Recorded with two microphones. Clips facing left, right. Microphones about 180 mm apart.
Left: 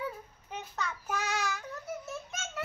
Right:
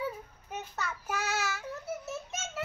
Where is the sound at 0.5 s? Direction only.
5° right (ahead or behind).